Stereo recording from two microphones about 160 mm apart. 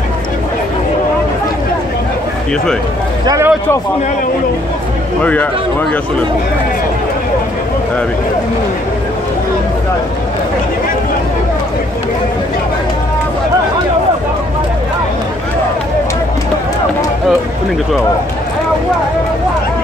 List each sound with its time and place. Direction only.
3.3 s a man's voice: 15° right (ahead or behind)
5.2 s speech: 10° left (ahead or behind)